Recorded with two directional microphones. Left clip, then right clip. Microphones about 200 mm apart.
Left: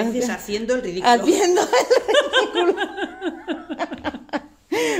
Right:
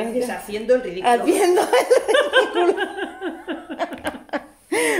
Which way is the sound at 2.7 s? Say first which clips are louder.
Even; 40° left (ahead or behind).